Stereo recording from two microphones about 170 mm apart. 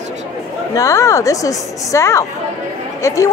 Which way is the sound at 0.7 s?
20° left (ahead or behind).